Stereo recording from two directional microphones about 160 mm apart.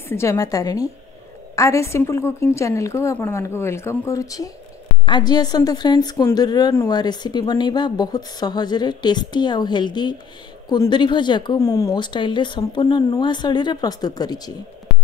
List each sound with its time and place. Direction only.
0.1 s a woman's voice: 20° left (ahead or behind)